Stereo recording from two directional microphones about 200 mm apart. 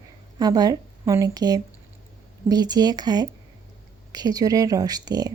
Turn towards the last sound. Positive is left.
turn(degrees=-20)  # may be behind; listen again after turning